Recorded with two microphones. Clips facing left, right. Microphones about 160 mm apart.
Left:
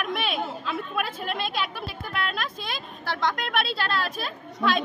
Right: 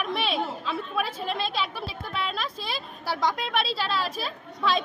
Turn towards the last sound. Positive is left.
turn(degrees=0)  # may be behind; listen again after turning